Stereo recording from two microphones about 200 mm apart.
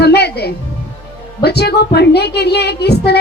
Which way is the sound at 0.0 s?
55° left (ahead or behind).